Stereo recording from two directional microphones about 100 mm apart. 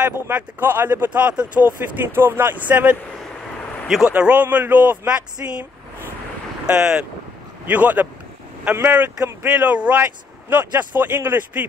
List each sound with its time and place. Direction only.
0.1 s speech: 20° right (ahead or behind)
2.1 s speech: 20° right (ahead or behind)
3.8 s speech: 5° right (ahead or behind); by 5.5 s 25° right (ahead or behind)
6.6 s speech: 5° right (ahead or behind)